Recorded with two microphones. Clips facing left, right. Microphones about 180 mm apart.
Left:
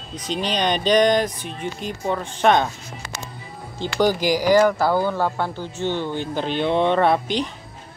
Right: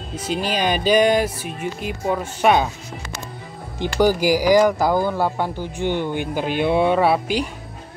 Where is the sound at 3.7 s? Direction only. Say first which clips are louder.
Right 2 dB; 10° right (ahead or behind).